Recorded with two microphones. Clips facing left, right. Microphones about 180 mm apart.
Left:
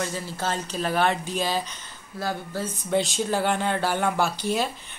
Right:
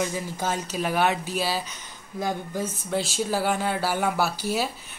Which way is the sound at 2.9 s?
Centre (ahead or behind).